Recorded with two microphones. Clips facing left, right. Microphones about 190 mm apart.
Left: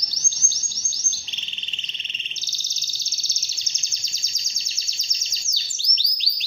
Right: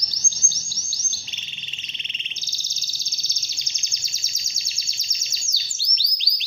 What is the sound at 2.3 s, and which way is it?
Bird vocalization, 10° right (ahead or behind).